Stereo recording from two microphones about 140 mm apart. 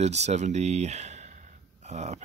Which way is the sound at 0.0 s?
50° right (ahead or behind).